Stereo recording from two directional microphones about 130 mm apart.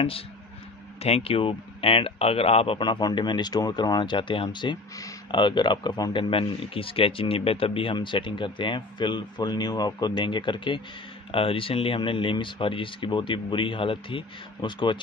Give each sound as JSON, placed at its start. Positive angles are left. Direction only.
{"t": 1.0, "sound": "speech", "side_deg": 50}